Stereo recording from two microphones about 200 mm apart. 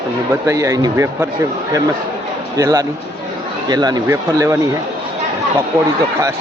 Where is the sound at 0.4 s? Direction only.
15° right (ahead or behind).